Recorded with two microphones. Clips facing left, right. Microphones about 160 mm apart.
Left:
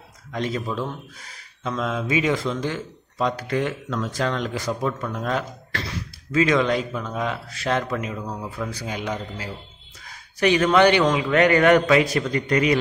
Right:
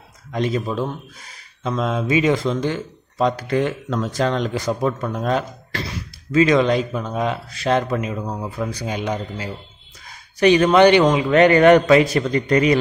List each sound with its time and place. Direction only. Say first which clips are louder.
0.3 s speech: right 5 dB; 15° right (ahead or behind)
1.6 s speech: right 4 dB; 25° right (ahead or behind)
5.7 s speech: right 3 dB; 15° right (ahead or behind)
6.3 s speech: right 4 dB; 25° right (ahead or behind)
10.4 s speech: right 4 dB; 25° right (ahead or behind)